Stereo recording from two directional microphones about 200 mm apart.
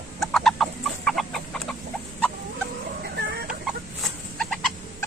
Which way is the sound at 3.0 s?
50° right (ahead or behind).